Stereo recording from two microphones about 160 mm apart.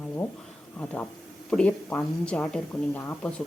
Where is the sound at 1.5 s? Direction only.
5° left (ahead or behind).